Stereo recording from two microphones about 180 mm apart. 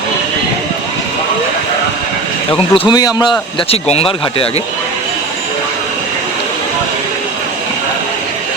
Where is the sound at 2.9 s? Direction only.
20° left (ahead or behind).